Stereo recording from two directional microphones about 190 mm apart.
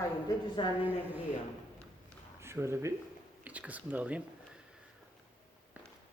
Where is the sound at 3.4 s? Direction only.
10° right (ahead or behind).